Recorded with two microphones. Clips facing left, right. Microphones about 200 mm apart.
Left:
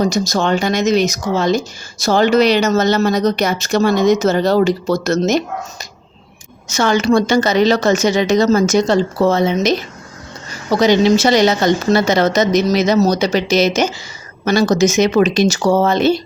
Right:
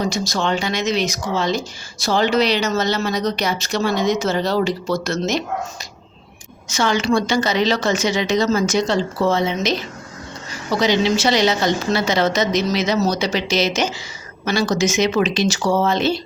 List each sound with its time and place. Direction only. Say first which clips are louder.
0.0 s speech: left 5 dB; 45° left (ahead or behind)
6.7 s speech: left 4 dB; 45° left (ahead or behind)